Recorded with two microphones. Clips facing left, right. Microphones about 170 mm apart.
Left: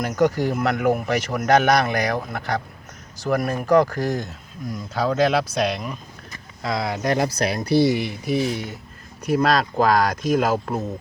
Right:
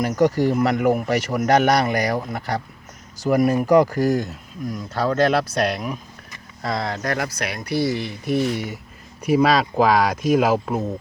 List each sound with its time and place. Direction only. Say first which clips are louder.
0.3 s speech: right 3 dB; 5° right (ahead or behind)
7.0 s speech: left 4 dB; 20° left (ahead or behind)
7.3 s speech: left 5 dB; 35° left (ahead or behind)
8.2 s speech: right 1 dB; centre (ahead or behind)